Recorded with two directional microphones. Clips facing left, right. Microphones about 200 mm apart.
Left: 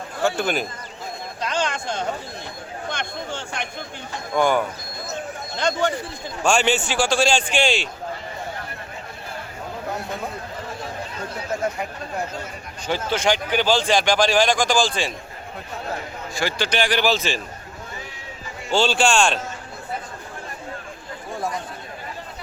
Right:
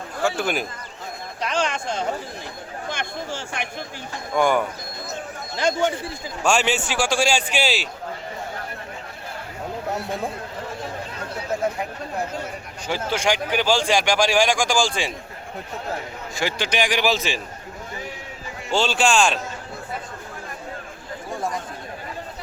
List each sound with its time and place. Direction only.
0.2 s a man's voice: 5° right (ahead or behind)
1.4 s a sound: centre (ahead or behind)
2.9 s a man's voice: 5° right (ahead or behind)
12.9 s speech: 10° right (ahead or behind)
16.3 s speech: 20° right (ahead or behind)
17.1 s a man's voice: centre (ahead or behind)
18.7 s a man's voice: centre (ahead or behind)